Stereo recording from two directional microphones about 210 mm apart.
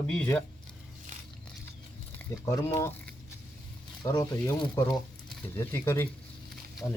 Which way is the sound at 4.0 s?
15° left (ahead or behind).